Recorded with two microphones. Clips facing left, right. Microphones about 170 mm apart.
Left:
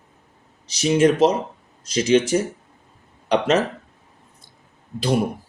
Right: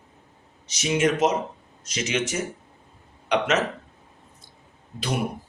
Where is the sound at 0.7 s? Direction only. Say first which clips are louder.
Left 6 dB; 35° left (ahead or behind).